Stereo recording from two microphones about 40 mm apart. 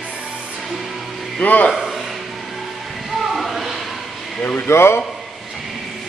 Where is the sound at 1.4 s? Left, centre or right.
Left.